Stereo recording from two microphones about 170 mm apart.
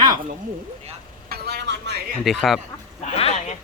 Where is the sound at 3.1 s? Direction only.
35° left (ahead or behind).